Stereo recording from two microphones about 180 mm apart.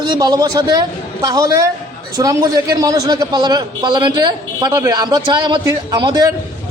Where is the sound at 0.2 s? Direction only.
20° right (ahead or behind).